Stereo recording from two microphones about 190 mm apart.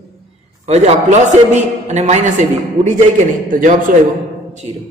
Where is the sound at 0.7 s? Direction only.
35° right (ahead or behind).